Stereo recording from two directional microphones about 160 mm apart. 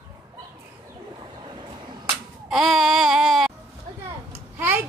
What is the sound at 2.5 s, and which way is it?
Babbling, centre (ahead or behind).